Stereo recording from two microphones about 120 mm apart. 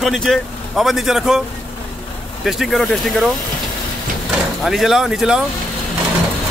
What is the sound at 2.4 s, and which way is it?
Speech, centre (ahead or behind).